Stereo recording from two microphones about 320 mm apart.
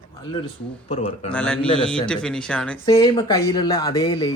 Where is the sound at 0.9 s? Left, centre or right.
Centre.